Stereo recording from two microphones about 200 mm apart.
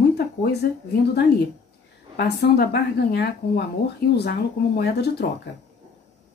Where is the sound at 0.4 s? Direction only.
55° left (ahead or behind).